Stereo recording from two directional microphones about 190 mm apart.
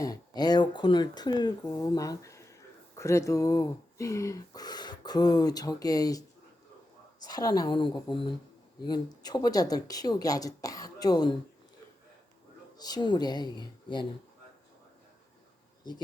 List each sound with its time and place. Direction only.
0.0 s speech: 20° left (ahead or behind)
12.8 s speech: 20° left (ahead or behind)